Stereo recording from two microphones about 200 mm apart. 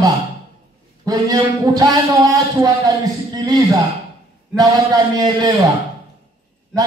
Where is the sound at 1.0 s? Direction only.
20° right (ahead or behind).